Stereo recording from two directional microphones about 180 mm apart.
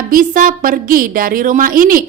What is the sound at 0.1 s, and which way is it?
A woman's voice, 50° right (ahead or behind).